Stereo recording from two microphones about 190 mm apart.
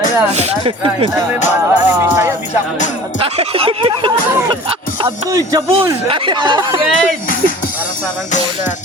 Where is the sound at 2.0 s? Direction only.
10° right (ahead or behind).